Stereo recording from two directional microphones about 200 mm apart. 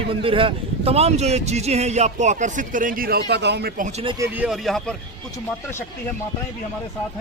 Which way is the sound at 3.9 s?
30° right (ahead or behind).